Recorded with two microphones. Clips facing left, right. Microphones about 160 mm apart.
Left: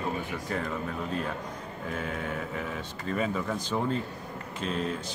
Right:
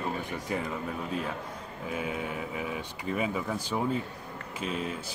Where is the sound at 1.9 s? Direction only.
10° right (ahead or behind).